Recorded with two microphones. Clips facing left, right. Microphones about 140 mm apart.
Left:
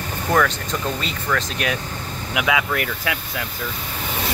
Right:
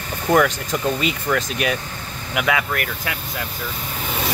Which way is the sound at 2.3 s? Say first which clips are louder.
Even; 5° left (ahead or behind).